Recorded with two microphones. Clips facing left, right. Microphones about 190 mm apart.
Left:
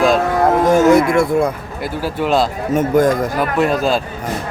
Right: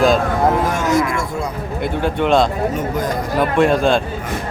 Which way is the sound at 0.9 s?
65° left (ahead or behind).